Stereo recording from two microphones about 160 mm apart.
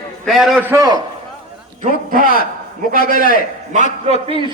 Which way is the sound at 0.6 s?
20° right (ahead or behind).